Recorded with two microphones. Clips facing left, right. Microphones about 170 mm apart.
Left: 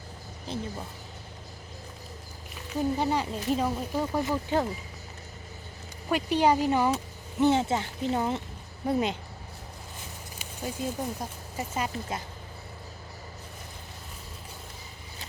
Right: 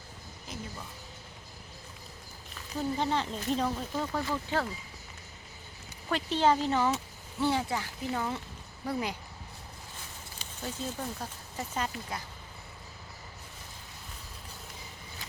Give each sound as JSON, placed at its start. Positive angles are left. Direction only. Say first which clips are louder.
{"t": 0.4, "sound": "speech", "louder": "left 7 dB", "side_deg": 30}
{"t": 3.0, "sound": "speech", "louder": "left 3 dB", "side_deg": 10}
{"t": 6.1, "sound": "speech", "louder": "left 3 dB", "side_deg": 10}
{"t": 10.3, "sound": "speech", "louder": "left 4 dB", "side_deg": 10}